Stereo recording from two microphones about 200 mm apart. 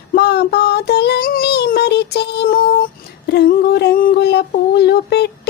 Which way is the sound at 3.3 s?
55° left (ahead or behind).